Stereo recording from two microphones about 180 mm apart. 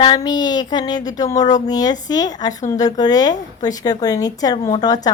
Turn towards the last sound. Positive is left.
turn(degrees=20)  # may be behind; listen again after turning